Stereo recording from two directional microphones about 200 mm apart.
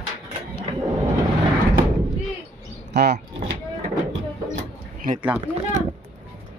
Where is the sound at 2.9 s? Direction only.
55° right (ahead or behind).